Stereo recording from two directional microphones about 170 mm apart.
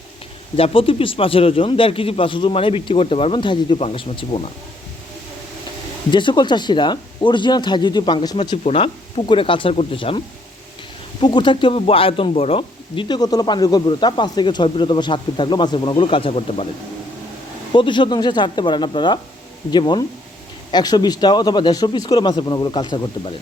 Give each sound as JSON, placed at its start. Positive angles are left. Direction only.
{"t": 0.5, "sound": "speech", "side_deg": 35}
{"t": 6.1, "sound": "speech", "side_deg": 30}
{"t": 11.2, "sound": "speech", "side_deg": 25}
{"t": 17.7, "sound": "speech", "side_deg": 30}